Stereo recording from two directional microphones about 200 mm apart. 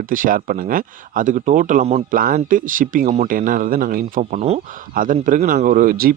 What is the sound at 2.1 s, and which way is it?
Speech, 45° right (ahead or behind).